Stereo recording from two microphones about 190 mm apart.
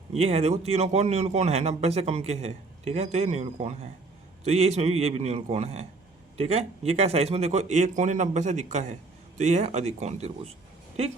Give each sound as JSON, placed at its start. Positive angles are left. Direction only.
{"t": 0.1, "sound": "a man's voice", "side_deg": -30}